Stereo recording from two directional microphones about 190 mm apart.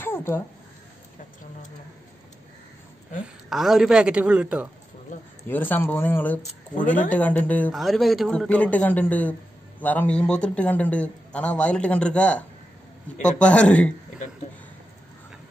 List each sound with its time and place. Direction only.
0.0 s a sound: 10° left (ahead or behind)
3.4 s a woman's voice: centre (ahead or behind)
5.5 s a man's voice: 10° left (ahead or behind)